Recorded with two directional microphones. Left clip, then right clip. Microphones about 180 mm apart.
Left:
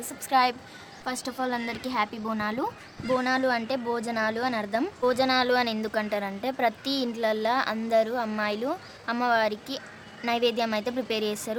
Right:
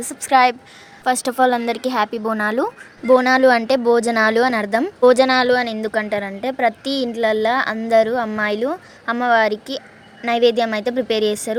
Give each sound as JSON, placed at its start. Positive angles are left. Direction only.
{"t": 0.0, "sound": "a woman's voice", "side_deg": -35}